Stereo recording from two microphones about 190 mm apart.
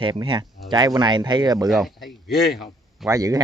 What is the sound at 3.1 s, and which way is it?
Speech, 20° right (ahead or behind).